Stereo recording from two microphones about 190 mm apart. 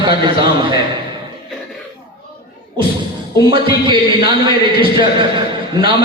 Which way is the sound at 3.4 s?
25° right (ahead or behind).